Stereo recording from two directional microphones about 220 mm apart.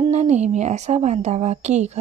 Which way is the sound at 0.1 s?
30° right (ahead or behind).